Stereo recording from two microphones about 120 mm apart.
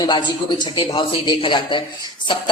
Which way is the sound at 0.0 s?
40° left (ahead or behind).